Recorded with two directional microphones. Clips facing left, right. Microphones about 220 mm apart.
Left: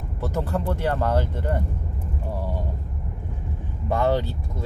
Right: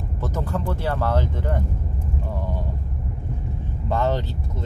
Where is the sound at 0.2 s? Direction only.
10° left (ahead or behind).